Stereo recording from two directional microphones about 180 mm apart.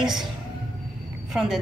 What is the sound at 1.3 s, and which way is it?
Speech, centre (ahead or behind).